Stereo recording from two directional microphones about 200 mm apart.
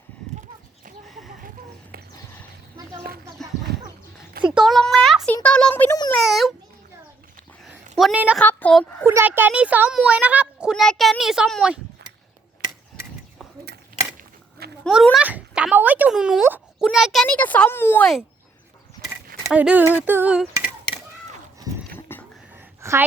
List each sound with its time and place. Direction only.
3.4 s chicken: centre (ahead or behind)
4.4 s a child's voice: centre (ahead or behind)
7.9 s a child's voice: 5° right (ahead or behind)
8.4 s a woman's voice: 5° left (ahead or behind)
9.0 s a child's voice: 10° right (ahead or behind)
14.8 s a child's voice: centre (ahead or behind)
19.5 s speech: 5° right (ahead or behind)
22.1 s a sound: 10° left (ahead or behind)
22.5 s a sound: 10° right (ahead or behind)